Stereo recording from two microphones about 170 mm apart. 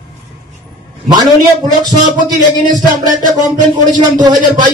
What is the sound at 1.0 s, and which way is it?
A man's voice, 25° right (ahead or behind).